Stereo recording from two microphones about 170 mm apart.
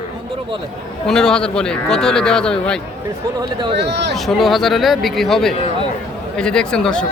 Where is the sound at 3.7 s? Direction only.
85° right.